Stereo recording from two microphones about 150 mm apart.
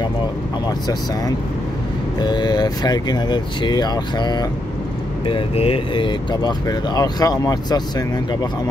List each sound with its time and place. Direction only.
0.7 s speech: 25° left (ahead or behind)